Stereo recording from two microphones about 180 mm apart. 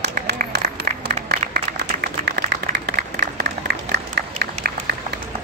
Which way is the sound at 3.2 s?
65° right (ahead or behind).